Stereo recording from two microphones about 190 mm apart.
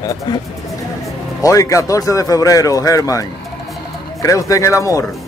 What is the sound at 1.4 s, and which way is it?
A man's voice, 15° left (ahead or behind).